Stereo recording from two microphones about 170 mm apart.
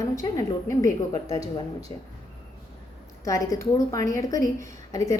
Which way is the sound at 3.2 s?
20° left (ahead or behind).